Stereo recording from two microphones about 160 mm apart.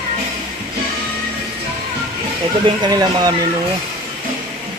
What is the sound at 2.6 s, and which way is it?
Speech, 25° right (ahead or behind).